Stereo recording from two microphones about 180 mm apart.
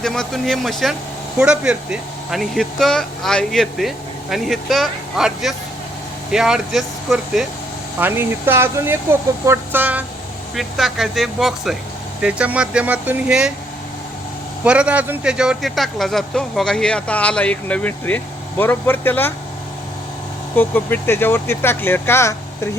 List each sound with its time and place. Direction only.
0.0 s speech: 5° left (ahead or behind)
14.6 s speech: 5° right (ahead or behind); by 19.3 s 10° left (ahead or behind)
20.6 s speech: 10° left (ahead or behind)